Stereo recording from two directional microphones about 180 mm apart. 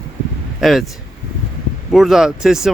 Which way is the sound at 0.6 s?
Centre (ahead or behind).